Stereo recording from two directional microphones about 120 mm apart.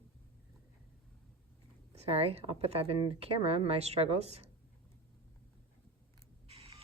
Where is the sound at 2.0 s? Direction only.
55° right (ahead or behind).